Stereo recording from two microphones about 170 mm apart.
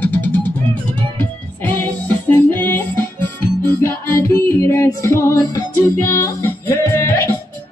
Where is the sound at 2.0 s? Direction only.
10° left (ahead or behind).